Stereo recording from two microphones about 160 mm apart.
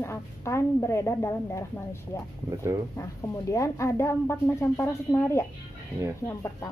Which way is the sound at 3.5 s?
20° left (ahead or behind).